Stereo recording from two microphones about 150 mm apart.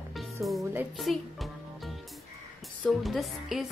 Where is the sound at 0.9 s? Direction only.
Centre (ahead or behind).